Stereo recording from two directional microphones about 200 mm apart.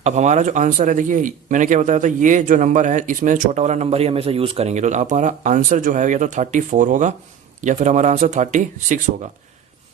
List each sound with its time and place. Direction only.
0.0 s speech: 35° right (ahead or behind)